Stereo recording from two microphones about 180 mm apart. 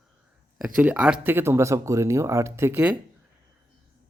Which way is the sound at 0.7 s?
5° right (ahead or behind).